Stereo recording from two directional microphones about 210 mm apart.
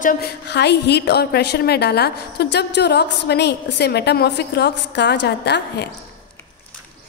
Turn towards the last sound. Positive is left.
turn(degrees=55)  # may be behind; listen again after turning